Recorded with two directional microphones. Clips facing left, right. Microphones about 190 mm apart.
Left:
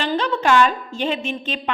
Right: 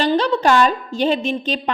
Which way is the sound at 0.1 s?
35° right (ahead or behind).